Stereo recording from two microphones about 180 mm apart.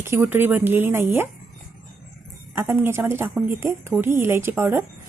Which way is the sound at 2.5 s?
10° right (ahead or behind).